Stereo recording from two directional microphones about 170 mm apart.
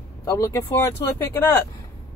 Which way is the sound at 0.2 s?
20° left (ahead or behind).